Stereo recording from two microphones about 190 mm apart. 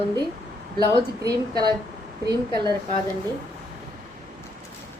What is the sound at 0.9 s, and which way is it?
Speech, 20° right (ahead or behind).